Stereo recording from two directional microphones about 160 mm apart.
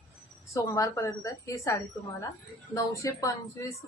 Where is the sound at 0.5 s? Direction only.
20° left (ahead or behind).